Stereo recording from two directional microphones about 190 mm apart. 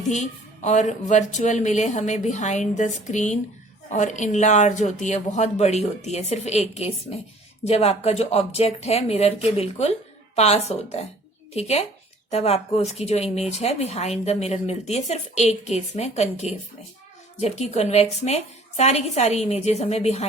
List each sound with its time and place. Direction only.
0.1 s speech: 40° left (ahead or behind)